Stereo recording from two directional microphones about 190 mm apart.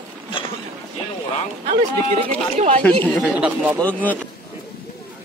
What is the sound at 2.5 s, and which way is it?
Speech, 35° right (ahead or behind).